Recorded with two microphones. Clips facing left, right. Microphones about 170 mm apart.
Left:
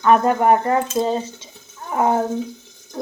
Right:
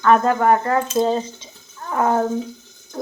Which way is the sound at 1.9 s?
20° left (ahead or behind).